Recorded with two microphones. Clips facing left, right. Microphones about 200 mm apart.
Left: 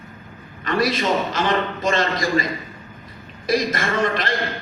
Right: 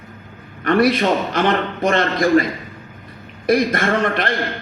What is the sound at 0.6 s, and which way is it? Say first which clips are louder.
A man's voice: right 6 dB; 60° right (ahead or behind).